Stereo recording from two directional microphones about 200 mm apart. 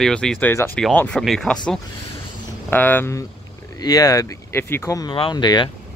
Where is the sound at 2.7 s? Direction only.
10° left (ahead or behind).